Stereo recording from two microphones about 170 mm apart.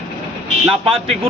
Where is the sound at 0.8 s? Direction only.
35° right (ahead or behind).